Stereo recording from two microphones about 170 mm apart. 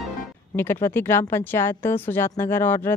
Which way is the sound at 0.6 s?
15° left (ahead or behind).